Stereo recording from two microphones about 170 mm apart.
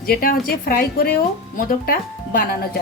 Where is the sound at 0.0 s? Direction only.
60° left (ahead or behind).